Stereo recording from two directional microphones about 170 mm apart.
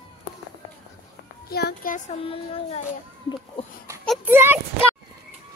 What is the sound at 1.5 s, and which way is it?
Speech, 65° left (ahead or behind).